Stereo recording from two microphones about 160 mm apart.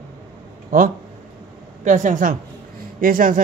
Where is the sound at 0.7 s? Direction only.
55° right (ahead or behind).